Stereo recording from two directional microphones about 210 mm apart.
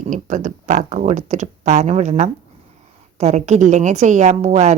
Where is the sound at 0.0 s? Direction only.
35° right (ahead or behind).